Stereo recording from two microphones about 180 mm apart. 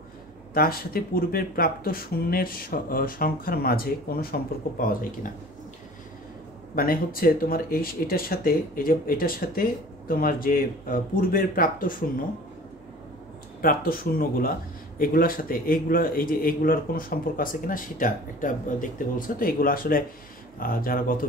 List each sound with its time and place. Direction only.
0.6 s speech: 55° left (ahead or behind)
6.7 s speech: 55° left (ahead or behind)
13.6 s speech: 55° left (ahead or behind)